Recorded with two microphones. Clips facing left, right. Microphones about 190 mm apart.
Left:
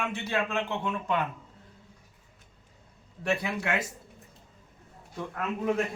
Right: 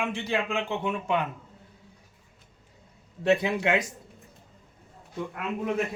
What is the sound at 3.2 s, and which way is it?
Speech, 20° right (ahead or behind).